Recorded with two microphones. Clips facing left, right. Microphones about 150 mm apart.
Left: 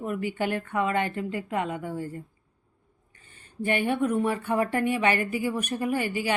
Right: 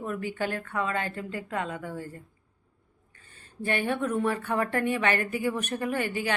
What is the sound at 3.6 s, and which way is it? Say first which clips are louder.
Speech: left 3 dB; 15° left (ahead or behind).